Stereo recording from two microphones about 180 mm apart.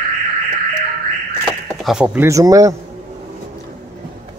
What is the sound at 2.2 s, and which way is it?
Speech, 20° right (ahead or behind).